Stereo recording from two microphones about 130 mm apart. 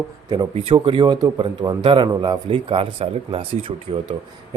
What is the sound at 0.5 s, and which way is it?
Speech, 45° right (ahead or behind).